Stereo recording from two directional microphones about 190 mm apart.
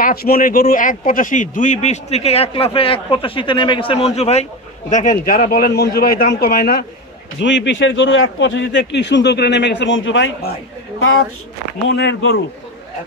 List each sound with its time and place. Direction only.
0.0 s a man's voice: 50° left (ahead or behind)
7.3 s speech: 70° left (ahead or behind)
11.0 s speech: 90° left
11.9 s speech: 80° left